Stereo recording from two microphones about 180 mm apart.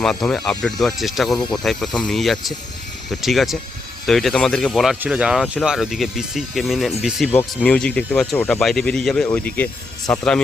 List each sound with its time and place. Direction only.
0.0 s speech: 5° left (ahead or behind)